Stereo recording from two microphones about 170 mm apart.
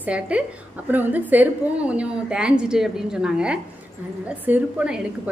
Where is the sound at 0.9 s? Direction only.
10° right (ahead or behind).